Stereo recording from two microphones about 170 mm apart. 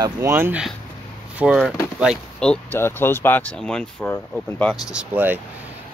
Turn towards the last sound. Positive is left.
turn(degrees=-10)  # may be behind; listen again after turning